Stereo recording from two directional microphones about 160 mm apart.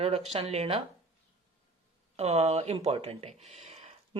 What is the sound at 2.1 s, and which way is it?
Speech, 45° right (ahead or behind).